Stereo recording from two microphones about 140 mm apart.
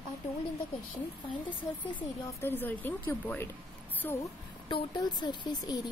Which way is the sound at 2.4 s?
15° left (ahead or behind).